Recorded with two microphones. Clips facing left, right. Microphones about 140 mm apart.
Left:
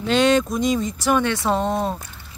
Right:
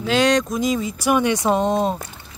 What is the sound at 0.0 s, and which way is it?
Speech, centre (ahead or behind).